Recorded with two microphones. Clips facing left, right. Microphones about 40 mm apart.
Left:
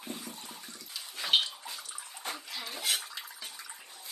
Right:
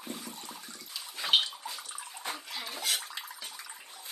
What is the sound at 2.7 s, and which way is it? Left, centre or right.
Bathtub, centre.